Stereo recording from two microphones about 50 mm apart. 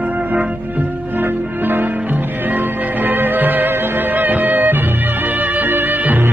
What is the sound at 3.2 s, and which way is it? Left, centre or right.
Music, right.